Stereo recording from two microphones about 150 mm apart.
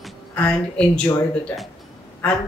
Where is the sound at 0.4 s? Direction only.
10° left (ahead or behind).